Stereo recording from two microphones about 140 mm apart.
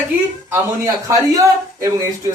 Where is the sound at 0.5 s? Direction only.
25° right (ahead or behind).